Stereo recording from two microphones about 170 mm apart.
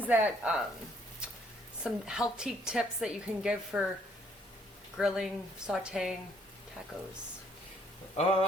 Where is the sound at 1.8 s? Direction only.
5° right (ahead or behind).